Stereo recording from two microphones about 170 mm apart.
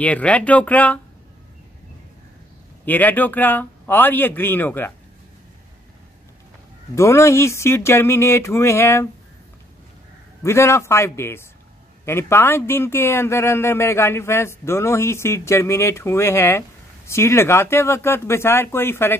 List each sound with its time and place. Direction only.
0.0 s a man's voice: 5° left (ahead or behind)
2.8 s a man's voice: 10° left (ahead or behind)
7.0 s a man's voice: 15° left (ahead or behind)
10.4 s a man's voice: 15° left (ahead or behind)